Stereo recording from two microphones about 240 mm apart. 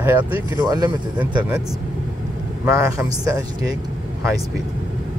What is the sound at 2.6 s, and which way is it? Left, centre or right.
Speech, centre.